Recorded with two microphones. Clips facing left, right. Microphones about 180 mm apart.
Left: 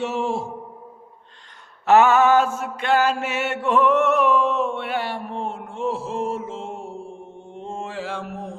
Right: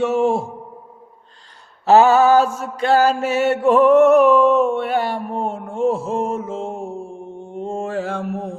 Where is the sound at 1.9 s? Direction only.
35° right (ahead or behind).